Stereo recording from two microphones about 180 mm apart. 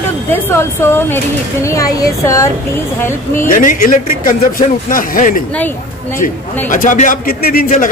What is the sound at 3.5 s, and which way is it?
Speech, 50° left (ahead or behind).